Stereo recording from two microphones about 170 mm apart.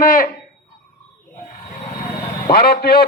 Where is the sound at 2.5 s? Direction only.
65° left (ahead or behind).